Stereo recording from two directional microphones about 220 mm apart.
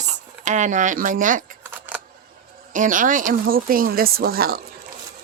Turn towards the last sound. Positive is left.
turn(degrees=-45)  # may be behind; listen again after turning